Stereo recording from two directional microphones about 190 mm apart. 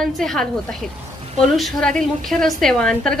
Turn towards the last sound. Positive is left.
turn(degrees=5)  # may be behind; listen again after turning